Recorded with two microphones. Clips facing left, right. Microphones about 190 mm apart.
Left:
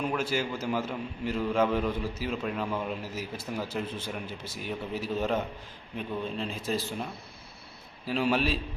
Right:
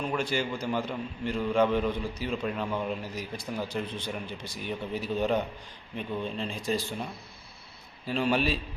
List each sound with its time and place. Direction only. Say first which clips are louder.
0.0 s a man's voice: even; 5° left (ahead or behind)